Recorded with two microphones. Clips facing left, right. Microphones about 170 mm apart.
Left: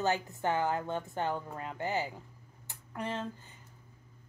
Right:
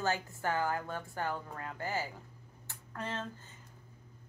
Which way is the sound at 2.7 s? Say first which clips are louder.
Left 3 dB; 15° left (ahead or behind).